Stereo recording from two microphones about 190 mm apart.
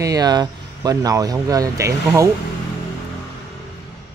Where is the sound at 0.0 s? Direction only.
20° right (ahead or behind).